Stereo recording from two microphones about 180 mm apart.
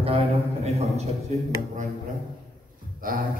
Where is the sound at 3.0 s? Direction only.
50° right (ahead or behind).